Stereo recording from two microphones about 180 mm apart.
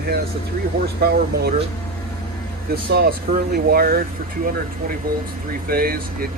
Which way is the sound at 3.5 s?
55° right (ahead or behind).